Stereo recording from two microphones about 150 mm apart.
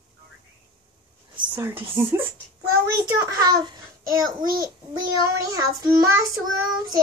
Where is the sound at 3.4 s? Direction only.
30° right (ahead or behind).